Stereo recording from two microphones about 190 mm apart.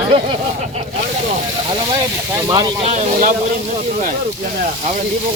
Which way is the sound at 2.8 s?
40° right (ahead or behind).